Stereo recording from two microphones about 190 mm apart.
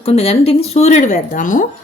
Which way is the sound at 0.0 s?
30° left (ahead or behind).